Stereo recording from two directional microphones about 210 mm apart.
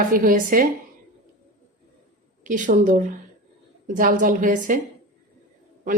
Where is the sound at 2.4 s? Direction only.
35° right (ahead or behind).